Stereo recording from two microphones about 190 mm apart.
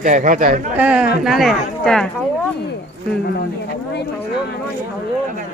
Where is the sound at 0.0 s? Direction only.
40° right (ahead or behind).